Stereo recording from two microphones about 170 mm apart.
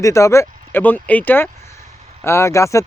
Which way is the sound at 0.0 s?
15° left (ahead or behind).